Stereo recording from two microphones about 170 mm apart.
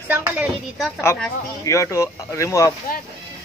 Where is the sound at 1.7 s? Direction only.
15° left (ahead or behind).